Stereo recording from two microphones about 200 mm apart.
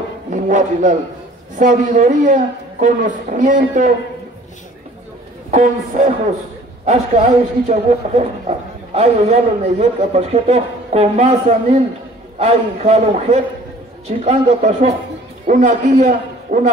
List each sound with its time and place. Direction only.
0.3 s a man's voice: 40° right (ahead or behind)
5.5 s a man's voice: 35° right (ahead or behind)